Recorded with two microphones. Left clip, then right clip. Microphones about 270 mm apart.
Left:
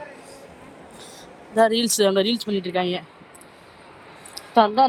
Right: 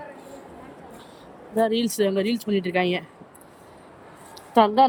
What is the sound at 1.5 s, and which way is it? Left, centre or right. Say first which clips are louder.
Speech: left 4 dB; centre.